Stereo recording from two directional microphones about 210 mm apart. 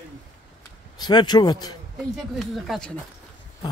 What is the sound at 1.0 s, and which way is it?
Speech, 20° left (ahead or behind).